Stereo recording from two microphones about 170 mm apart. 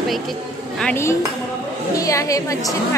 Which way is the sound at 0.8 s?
10° left (ahead or behind).